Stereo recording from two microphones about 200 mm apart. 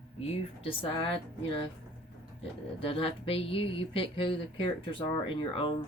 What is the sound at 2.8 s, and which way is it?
Speech, 25° left (ahead or behind).